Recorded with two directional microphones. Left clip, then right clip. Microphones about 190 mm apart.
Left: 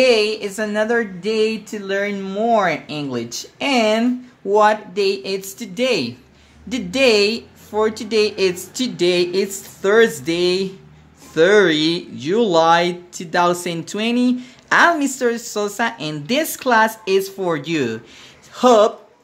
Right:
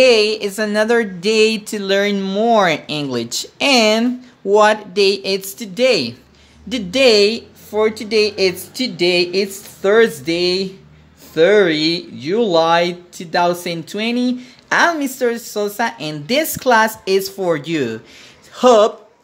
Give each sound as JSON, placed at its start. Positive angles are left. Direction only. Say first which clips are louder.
{"t": 0.0, "sound": "speech", "louder": "right 3 dB", "side_deg": -20}